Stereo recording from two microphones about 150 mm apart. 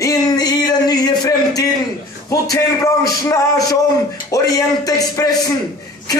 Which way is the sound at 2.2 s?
20° left (ahead or behind).